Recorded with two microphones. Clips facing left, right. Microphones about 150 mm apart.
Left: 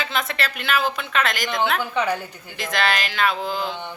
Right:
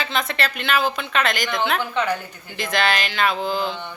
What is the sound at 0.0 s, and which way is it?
Speech, 5° left (ahead or behind).